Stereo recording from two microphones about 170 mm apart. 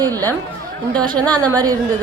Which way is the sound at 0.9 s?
5° left (ahead or behind).